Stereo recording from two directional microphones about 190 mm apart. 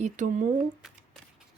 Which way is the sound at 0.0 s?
40° right (ahead or behind).